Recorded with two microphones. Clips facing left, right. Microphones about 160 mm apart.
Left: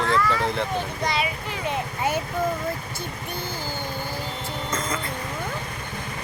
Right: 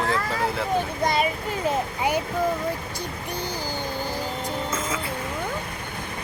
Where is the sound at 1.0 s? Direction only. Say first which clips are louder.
Right 3 dB; 45° right (ahead or behind).